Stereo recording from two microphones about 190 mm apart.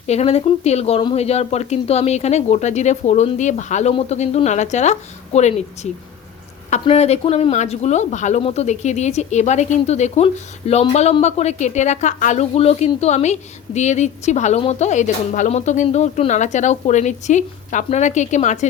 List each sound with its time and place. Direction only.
0.1 s speech: 35° left (ahead or behind)